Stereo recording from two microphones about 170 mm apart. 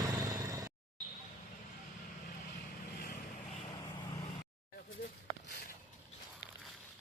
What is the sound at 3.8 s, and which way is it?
Vehicle, 30° left (ahead or behind).